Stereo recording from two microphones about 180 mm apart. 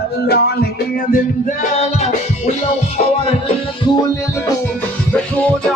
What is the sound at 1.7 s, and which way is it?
Music, 35° left (ahead or behind).